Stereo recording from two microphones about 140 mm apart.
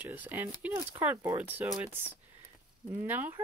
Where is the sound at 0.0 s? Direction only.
15° right (ahead or behind).